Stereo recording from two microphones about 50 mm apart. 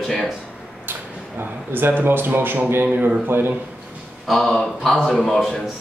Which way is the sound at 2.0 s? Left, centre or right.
Right.